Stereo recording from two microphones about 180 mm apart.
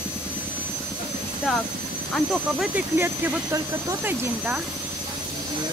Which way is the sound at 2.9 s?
15° right (ahead or behind).